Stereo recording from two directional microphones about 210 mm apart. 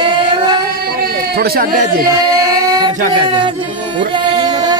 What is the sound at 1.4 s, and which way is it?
Speech, 45° right (ahead or behind).